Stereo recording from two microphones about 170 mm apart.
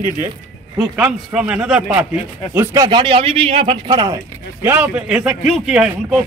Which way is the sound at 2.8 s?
30° right (ahead or behind).